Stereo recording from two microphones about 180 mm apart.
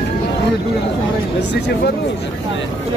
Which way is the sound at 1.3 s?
70° left (ahead or behind).